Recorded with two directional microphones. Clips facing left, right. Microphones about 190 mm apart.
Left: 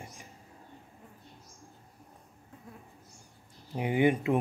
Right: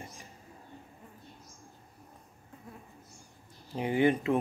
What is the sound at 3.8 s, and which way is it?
Speech, 15° left (ahead or behind).